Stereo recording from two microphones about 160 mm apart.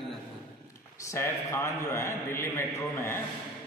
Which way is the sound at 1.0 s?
15° left (ahead or behind).